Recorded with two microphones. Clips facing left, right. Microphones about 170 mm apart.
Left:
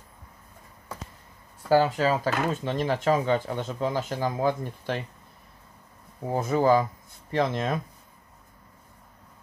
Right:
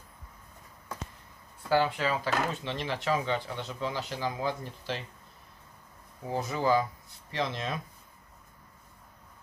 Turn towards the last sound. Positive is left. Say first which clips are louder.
# left 7 dB
turn(degrees=50)  # may be behind; listen again after turning